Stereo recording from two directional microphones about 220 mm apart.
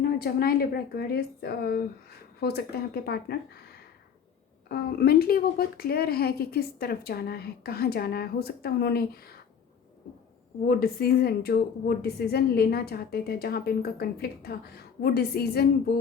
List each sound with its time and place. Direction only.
0.0 s speech: 45° left (ahead or behind)
4.7 s speech: 45° left (ahead or behind)
10.7 s speech: 45° left (ahead or behind)